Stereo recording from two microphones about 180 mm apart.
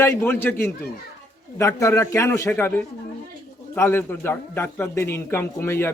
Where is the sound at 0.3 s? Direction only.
10° left (ahead or behind).